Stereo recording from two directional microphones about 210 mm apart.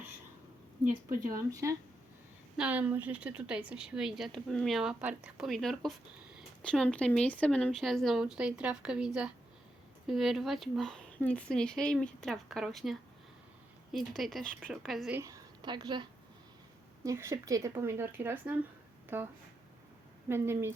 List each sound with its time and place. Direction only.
1.5 s a woman's voice: 15° right (ahead or behind)
15.2 s a woman's voice: 20° right (ahead or behind)